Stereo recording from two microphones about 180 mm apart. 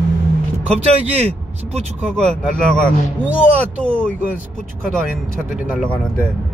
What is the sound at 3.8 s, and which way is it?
Speech, 10° left (ahead or behind).